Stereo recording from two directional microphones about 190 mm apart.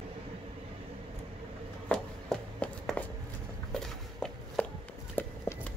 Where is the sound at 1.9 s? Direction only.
5° left (ahead or behind).